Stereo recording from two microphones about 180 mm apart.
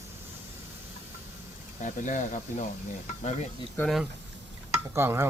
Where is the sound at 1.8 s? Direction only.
45° left (ahead or behind).